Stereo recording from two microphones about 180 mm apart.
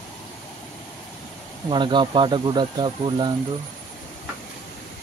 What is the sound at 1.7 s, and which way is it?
Speech, 25° right (ahead or behind).